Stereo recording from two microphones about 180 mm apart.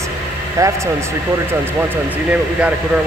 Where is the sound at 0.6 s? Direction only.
15° right (ahead or behind).